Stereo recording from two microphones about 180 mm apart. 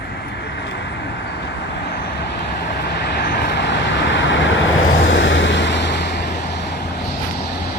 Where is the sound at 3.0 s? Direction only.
65° left (ahead or behind).